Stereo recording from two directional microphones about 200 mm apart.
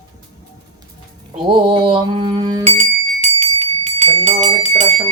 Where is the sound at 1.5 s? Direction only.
25° right (ahead or behind).